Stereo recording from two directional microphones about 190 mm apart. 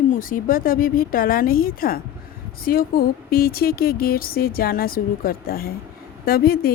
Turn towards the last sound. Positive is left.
turn(degrees=50)  # may be behind; listen again after turning